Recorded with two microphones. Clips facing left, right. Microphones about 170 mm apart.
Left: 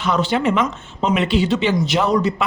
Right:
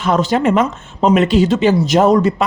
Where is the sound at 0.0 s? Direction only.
45° right (ahead or behind).